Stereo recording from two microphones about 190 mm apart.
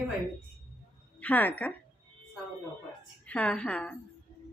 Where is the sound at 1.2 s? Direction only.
10° left (ahead or behind).